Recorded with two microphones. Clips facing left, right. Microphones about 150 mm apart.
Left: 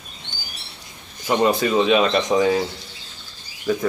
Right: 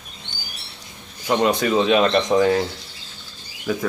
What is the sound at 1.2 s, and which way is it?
Speech, centre (ahead or behind).